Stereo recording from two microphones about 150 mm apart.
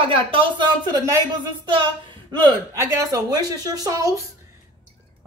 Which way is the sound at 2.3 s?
25° right (ahead or behind).